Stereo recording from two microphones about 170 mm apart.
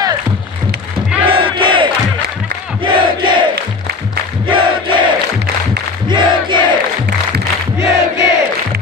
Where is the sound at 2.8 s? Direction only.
30° right (ahead or behind).